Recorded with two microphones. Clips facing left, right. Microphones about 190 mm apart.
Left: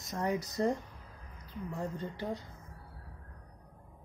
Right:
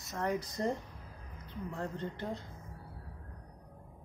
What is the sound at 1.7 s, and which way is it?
Speech, 10° left (ahead or behind).